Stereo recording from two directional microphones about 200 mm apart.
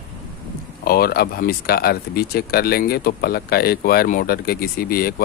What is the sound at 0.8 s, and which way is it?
Speech, 50° left (ahead or behind).